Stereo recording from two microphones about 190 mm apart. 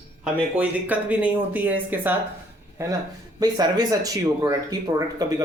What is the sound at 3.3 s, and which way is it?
Speech, 20° right (ahead or behind).